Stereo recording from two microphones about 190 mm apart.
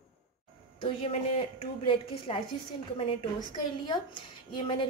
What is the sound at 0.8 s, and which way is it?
A woman's voice, 30° left (ahead or behind).